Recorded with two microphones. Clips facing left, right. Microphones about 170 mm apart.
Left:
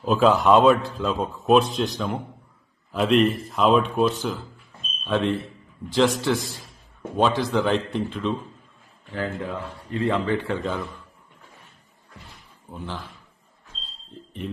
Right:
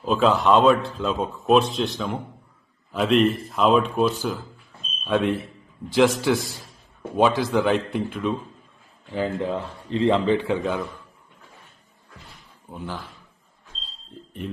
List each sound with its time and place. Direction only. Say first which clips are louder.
0.0 s a man's voice: left 1 dB; centre (ahead or behind)
9.0 s a man's voice: right 4 dB; 20° right (ahead or behind)
12.7 s speech: right 1 dB; 5° right (ahead or behind)